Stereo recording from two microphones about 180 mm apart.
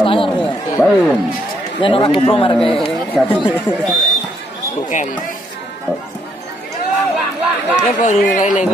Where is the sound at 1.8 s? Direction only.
30° left (ahead or behind).